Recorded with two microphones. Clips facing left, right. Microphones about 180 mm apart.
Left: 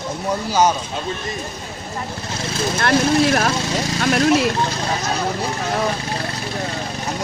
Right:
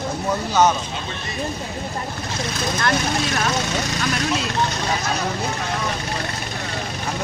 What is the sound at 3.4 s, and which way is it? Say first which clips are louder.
Speech: left 2 dB; 30° left (ahead or behind).